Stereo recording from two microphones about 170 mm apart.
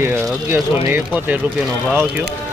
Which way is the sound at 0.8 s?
10° right (ahead or behind).